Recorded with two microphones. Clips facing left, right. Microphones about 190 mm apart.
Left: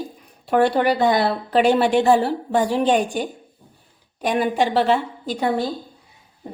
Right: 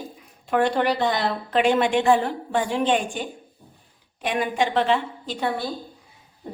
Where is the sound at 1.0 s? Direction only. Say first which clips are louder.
Left 5 dB; 40° left (ahead or behind).